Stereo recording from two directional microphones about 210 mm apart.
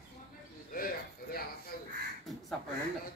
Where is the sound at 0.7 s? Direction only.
45° left (ahead or behind).